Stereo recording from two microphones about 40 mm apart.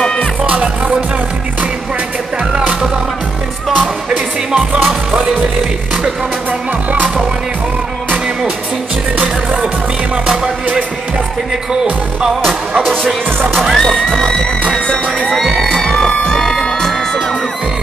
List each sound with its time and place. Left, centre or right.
9.2 s music: right
13.7 s music: centre
14.9 s crowd: centre
15.4 s music: centre
15.7 s music: centre
16.3 s crowd: centre